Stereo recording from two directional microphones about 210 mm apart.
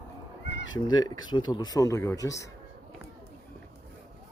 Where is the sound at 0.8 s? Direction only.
20° left (ahead or behind).